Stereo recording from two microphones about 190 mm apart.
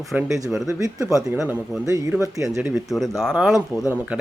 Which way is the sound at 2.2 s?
15° right (ahead or behind).